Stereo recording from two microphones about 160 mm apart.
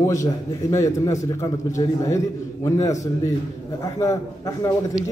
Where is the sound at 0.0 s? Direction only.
20° left (ahead or behind).